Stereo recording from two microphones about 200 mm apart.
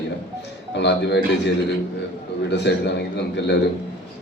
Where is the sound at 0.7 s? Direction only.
60° left (ahead or behind).